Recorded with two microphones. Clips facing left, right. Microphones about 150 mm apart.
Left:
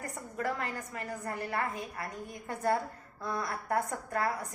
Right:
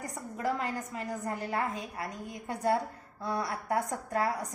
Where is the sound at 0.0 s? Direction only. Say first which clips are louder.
Right 1 dB; 15° right (ahead or behind).